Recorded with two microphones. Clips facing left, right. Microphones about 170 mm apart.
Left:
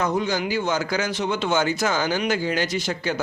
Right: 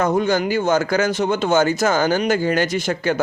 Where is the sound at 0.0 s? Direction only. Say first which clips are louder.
Right 5 dB; 50° right (ahead or behind).